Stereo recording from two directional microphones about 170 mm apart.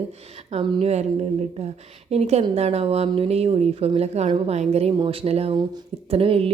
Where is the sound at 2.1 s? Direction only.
35° right (ahead or behind).